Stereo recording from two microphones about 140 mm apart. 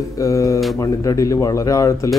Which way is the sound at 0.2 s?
20° left (ahead or behind).